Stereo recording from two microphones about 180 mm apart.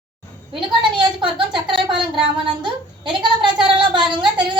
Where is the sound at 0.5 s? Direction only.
25° right (ahead or behind).